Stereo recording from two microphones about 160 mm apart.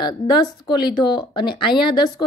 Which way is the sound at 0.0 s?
25° left (ahead or behind).